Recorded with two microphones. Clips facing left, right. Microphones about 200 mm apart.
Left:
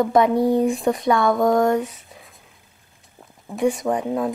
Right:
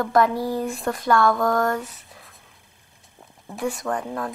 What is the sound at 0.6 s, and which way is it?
Speech, centre (ahead or behind).